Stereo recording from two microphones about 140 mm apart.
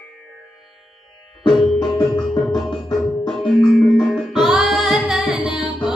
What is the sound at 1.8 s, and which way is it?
Music, 30° left (ahead or behind).